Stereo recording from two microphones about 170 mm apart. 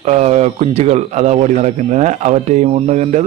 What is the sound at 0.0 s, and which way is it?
A man's voice, 40° right (ahead or behind).